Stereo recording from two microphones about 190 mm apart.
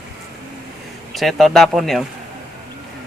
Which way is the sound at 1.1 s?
Centre (ahead or behind).